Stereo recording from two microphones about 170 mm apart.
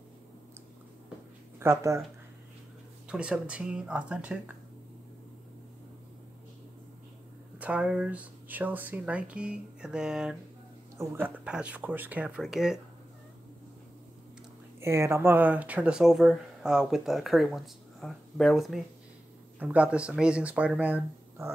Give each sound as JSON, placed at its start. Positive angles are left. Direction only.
{"t": 1.6, "sound": "speech", "side_deg": -15}
{"t": 3.1, "sound": "speech", "side_deg": -5}
{"t": 7.5, "sound": "speech", "side_deg": -5}
{"t": 11.0, "sound": "speech", "side_deg": -15}
{"t": 14.8, "sound": "speech", "side_deg": -15}